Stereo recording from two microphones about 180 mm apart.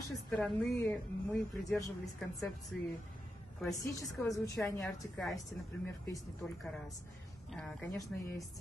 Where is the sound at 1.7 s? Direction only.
5° left (ahead or behind).